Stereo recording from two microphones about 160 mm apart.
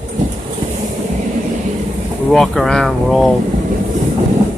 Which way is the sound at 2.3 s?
5° left (ahead or behind).